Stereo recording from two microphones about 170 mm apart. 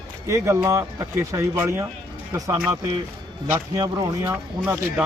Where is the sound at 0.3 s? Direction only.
15° right (ahead or behind).